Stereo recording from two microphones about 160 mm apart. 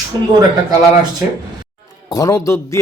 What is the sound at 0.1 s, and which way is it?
Speech, 25° right (ahead or behind).